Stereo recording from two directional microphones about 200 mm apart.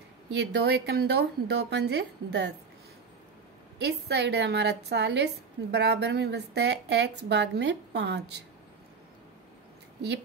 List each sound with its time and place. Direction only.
0.3 s a woman's voice: 55° right (ahead or behind)
3.8 s a woman's voice: 55° right (ahead or behind)